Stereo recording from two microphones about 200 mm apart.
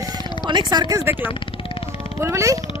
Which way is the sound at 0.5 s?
20° right (ahead or behind).